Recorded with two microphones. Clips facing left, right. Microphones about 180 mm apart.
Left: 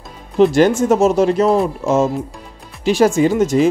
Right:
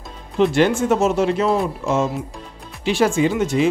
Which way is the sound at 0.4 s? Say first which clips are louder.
Left 4 dB; 40° left (ahead or behind).